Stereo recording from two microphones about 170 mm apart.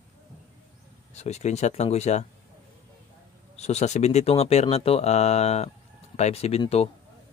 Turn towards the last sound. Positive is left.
turn(degrees=35)  # may be behind; listen again after turning